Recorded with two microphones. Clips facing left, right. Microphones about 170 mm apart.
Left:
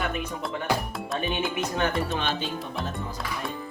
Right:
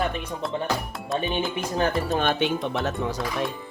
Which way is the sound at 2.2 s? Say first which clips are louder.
Right 6 dB; 60° right (ahead or behind).